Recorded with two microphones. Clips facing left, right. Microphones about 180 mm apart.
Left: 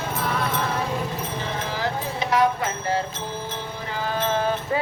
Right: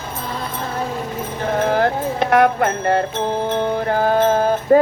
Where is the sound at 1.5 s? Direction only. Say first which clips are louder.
Right 12 dB; 55° right (ahead or behind).